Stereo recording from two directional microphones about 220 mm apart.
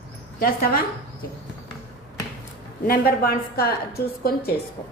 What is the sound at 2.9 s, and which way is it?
A woman's voice, 45° left (ahead or behind).